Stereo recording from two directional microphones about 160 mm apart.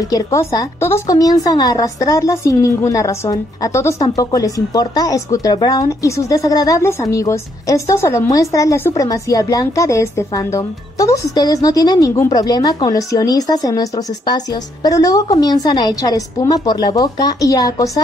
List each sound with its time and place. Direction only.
0.1 s a woman's voice: 20° left (ahead or behind)